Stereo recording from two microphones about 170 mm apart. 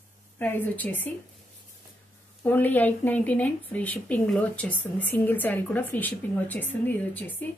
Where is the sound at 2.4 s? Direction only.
10° left (ahead or behind).